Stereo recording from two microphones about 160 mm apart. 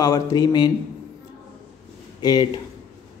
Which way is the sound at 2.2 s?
25° left (ahead or behind).